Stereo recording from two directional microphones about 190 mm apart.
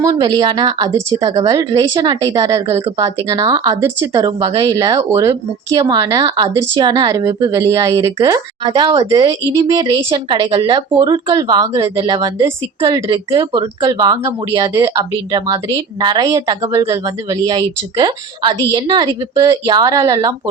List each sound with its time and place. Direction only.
0.0 s speech: 20° right (ahead or behind)